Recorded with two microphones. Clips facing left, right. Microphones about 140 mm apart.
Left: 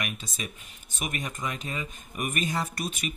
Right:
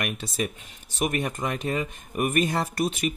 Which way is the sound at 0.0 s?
55° right (ahead or behind).